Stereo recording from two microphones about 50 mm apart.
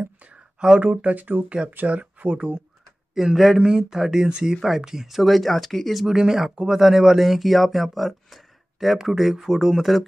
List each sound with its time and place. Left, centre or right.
0.6 s speech: centre
0.8 s speech: right
3.2 s speech: centre
6.0 s speech: centre
6.8 s speech: centre